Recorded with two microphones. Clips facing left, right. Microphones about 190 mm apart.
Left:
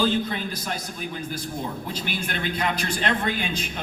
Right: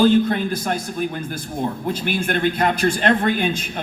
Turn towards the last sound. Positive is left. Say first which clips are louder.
# right 6 dB
turn(degrees=-50)  # may be behind; listen again after turning